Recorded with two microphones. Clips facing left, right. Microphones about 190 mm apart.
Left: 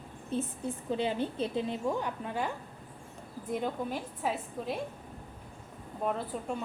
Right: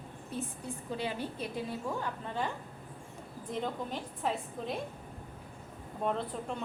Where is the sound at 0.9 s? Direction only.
20° left (ahead or behind).